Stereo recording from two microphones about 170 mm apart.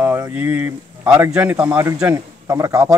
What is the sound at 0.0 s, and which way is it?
A man's voice, 15° right (ahead or behind).